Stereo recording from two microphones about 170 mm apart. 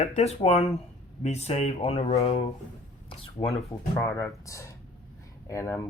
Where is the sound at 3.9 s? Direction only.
15° left (ahead or behind).